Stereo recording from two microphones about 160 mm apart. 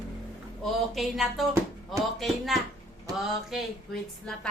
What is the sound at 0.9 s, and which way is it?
Speech, centre (ahead or behind).